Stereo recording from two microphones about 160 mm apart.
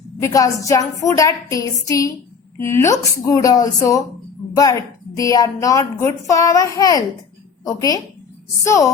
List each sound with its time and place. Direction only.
0.2 s a woman's voice: 20° left (ahead or behind)